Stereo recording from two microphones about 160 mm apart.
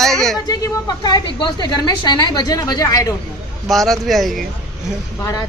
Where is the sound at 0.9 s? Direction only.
25° left (ahead or behind).